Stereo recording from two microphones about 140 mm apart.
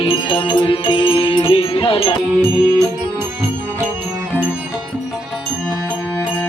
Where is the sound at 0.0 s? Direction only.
35° left (ahead or behind).